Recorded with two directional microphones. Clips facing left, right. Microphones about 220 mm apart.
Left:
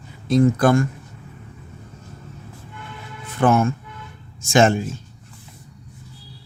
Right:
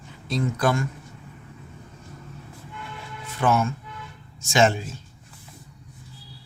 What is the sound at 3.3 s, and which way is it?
Speech, 50° left (ahead or behind).